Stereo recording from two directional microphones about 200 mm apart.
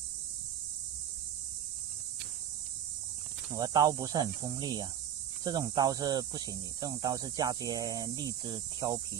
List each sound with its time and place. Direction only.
3.5 s speech: 20° right (ahead or behind)